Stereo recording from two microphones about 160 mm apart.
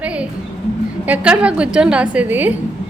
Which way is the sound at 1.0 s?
10° right (ahead or behind).